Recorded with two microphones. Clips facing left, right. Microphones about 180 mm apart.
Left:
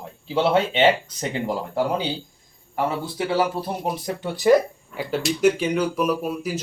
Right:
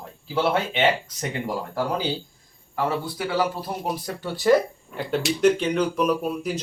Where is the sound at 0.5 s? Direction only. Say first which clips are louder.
Left 4 dB; 30° left (ahead or behind).